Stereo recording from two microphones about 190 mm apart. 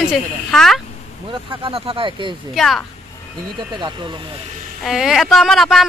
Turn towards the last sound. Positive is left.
turn(degrees=0)  # may be behind; listen again after turning